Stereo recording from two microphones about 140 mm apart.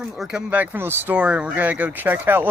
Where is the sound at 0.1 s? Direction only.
5° right (ahead or behind).